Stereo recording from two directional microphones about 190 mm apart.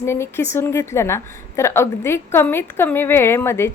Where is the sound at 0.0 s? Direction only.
15° left (ahead or behind).